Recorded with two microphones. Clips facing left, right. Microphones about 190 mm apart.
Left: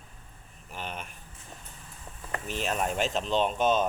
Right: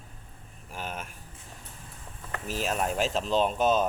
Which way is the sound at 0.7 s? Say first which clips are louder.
Right 1 dB; 5° right (ahead or behind).